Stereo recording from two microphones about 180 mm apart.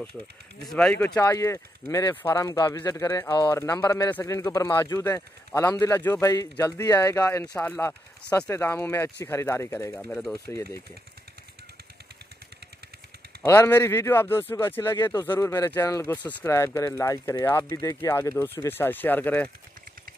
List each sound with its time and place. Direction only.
0.7 s speech: 5° left (ahead or behind)
13.4 s speech: 10° left (ahead or behind)